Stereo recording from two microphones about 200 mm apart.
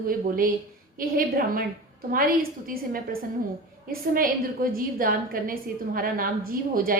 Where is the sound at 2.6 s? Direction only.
45° right (ahead or behind).